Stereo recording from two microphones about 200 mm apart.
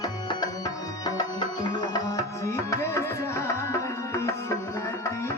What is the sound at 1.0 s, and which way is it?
Tabla, 20° left (ahead or behind).